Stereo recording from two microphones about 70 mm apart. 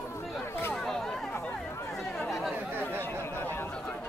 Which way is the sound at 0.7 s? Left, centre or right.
Centre.